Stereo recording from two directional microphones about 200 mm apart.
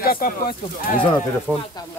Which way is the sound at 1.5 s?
10° right (ahead or behind).